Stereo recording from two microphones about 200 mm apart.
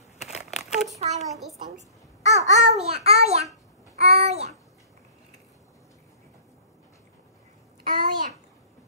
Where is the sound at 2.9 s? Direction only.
30° right (ahead or behind).